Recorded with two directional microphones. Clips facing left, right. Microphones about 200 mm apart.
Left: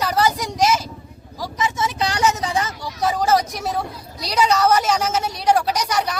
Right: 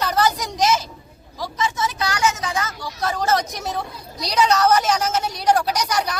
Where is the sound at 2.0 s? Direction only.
30° left (ahead or behind).